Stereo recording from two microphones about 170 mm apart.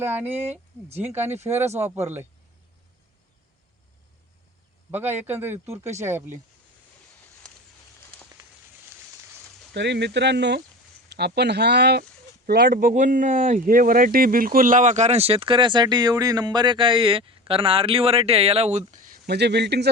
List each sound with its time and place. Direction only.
0.0 s speech: 10° right (ahead or behind)
0.3 s speech: 40° right (ahead or behind)
0.9 s speech: 10° right (ahead or behind)
4.9 s a man's voice: 10° right (ahead or behind)
9.7 s speech: 90° right
12.5 s speech: 60° right (ahead or behind)
19.3 s a man's voice: 80° right